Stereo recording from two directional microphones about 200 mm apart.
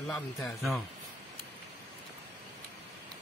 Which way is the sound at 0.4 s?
Centre (ahead or behind).